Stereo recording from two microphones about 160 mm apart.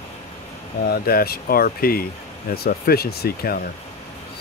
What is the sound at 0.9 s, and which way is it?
Speech, 70° left (ahead or behind).